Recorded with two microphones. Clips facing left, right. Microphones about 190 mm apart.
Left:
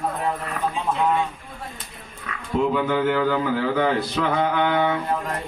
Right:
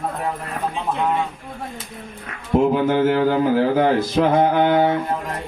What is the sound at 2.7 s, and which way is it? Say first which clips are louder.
A man's voice: right 4 dB; 40° right (ahead or behind).